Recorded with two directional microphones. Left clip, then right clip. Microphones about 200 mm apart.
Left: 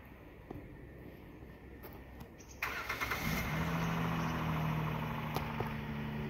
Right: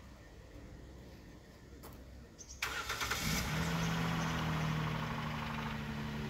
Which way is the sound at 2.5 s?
40° right (ahead or behind).